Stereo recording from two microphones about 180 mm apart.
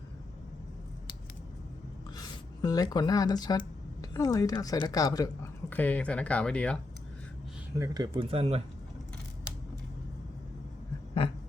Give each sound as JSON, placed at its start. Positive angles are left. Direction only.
{"t": 2.1, "sound": "speech", "side_deg": 20}
{"t": 7.8, "sound": "speech", "side_deg": -20}